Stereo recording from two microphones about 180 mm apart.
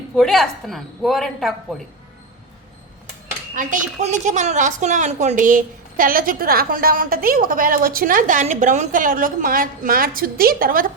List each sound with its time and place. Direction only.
0.2 s a woman's voice: centre (ahead or behind)
3.5 s a woman's voice: 45° right (ahead or behind)